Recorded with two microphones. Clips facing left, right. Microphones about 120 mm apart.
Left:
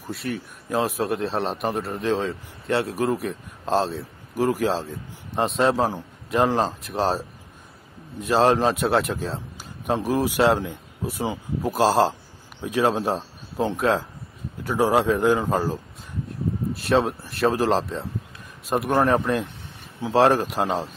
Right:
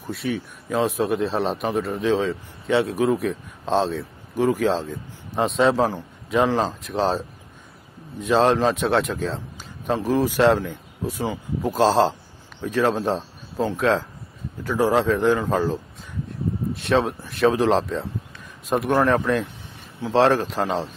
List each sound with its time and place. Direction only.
0.0 s a man's voice: centre (ahead or behind)
18.9 s a man's voice: 15° left (ahead or behind)